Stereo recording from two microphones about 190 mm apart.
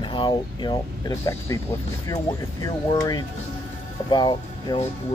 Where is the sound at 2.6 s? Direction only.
20° left (ahead or behind).